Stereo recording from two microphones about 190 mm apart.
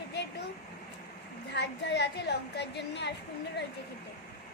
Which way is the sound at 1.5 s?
65° left (ahead or behind).